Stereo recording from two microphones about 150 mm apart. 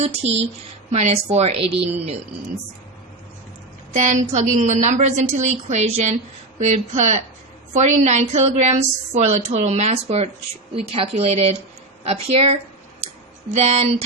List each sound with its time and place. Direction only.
0.0 s a woman's voice: 45° right (ahead or behind)
3.9 s a woman's voice: 55° right (ahead or behind)